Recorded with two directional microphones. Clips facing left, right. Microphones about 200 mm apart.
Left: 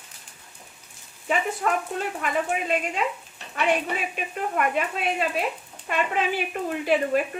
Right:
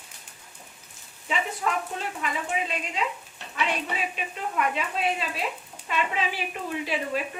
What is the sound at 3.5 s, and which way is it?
Speech, 50° left (ahead or behind).